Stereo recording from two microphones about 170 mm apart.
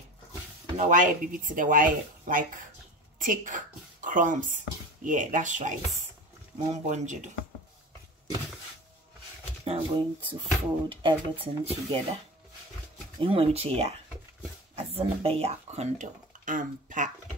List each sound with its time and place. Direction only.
0.7 s a woman's voice: 50° right (ahead or behind)
9.7 s speech: 30° right (ahead or behind)
13.2 s speech: 35° right (ahead or behind); by 17.1 s 50° right (ahead or behind)